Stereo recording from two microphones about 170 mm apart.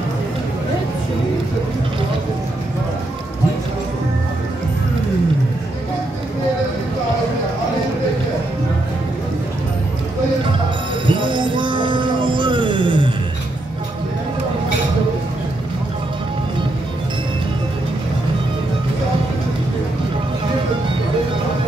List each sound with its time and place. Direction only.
11.1 s music: 30° right (ahead or behind)